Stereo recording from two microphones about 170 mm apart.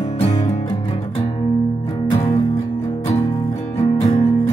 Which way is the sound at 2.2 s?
20° left (ahead or behind).